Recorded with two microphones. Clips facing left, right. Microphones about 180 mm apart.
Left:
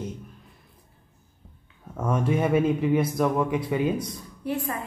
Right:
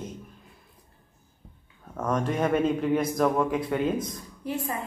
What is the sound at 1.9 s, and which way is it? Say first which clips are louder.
Speech: left 2 dB; 10° left (ahead or behind).